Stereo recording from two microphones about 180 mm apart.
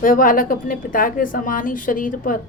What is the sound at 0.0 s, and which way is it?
A woman's voice, 50° left (ahead or behind).